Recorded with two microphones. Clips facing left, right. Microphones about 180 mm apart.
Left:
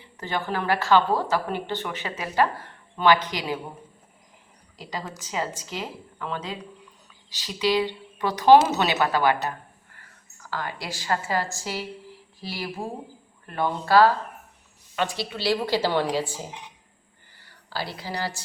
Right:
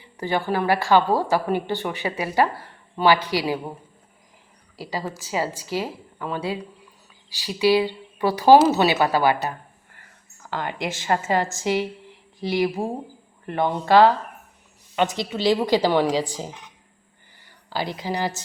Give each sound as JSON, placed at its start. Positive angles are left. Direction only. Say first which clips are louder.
{"t": 0.2, "sound": "a woman's voice", "louder": "right 5 dB", "side_deg": -10}
{"t": 4.8, "sound": "a woman's voice", "louder": "right 5 dB", "side_deg": -5}